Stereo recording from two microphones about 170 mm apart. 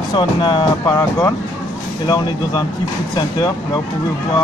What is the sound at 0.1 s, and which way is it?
Speech, 25° left (ahead or behind).